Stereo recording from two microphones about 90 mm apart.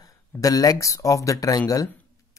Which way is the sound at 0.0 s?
45° left (ahead or behind).